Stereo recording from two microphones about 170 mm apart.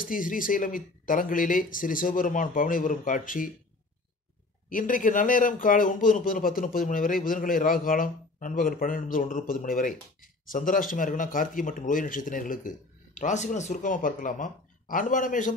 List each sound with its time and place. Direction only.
0.0 s a man's voice: 55° left (ahead or behind)
4.6 s a man's voice: 55° left (ahead or behind)